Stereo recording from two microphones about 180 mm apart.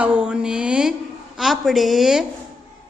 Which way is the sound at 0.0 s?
5° right (ahead or behind).